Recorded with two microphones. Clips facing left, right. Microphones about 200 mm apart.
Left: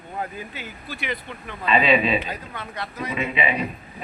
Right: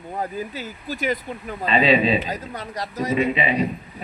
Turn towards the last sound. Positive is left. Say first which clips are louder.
# right 4 dB
turn(degrees=-35)  # may be behind; listen again after turning